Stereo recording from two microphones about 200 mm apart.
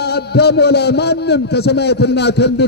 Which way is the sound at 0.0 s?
55° left (ahead or behind).